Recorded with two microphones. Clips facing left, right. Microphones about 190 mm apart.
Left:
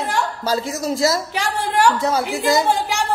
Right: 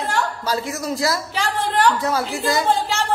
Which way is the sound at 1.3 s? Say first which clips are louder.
Left 1 dB; 15° left (ahead or behind).